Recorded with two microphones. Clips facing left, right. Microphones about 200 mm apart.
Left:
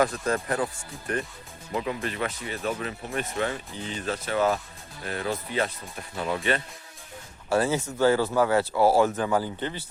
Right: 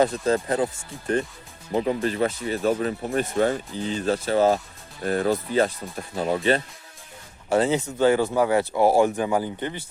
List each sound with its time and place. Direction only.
0.0 s speech: 25° right (ahead or behind)
7.5 s speech: 20° right (ahead or behind)